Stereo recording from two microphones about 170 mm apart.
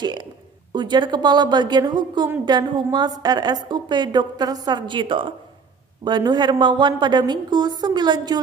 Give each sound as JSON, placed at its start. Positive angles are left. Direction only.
{"t": 0.0, "sound": "a woman's voice", "side_deg": -25}